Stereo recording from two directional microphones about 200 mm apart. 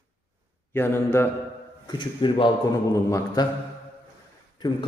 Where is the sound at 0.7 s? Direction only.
10° left (ahead or behind).